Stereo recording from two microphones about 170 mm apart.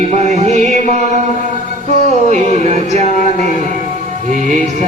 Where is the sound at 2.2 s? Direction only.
40° right (ahead or behind).